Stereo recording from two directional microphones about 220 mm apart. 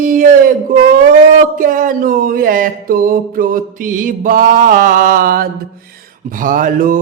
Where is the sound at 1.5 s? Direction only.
40° right (ahead or behind).